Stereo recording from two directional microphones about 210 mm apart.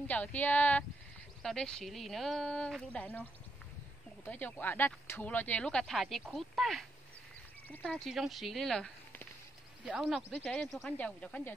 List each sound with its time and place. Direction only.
0.1 s speech: 10° left (ahead or behind)
4.3 s speech: 10° left (ahead or behind)
7.9 s speech: centre (ahead or behind)